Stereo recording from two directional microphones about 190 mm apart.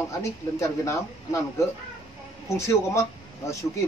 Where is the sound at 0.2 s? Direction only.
15° left (ahead or behind).